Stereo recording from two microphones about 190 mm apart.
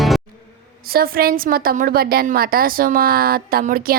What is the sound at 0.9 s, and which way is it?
A woman's voice, 50° right (ahead or behind).